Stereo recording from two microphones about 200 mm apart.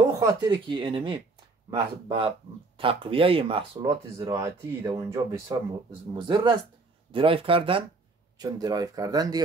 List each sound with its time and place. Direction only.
0.2 s speech: 15° right (ahead or behind)